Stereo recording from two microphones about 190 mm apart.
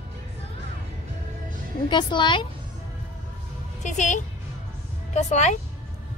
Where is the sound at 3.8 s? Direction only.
40° left (ahead or behind).